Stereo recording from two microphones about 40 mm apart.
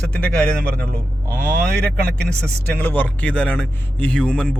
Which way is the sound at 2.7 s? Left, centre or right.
Left.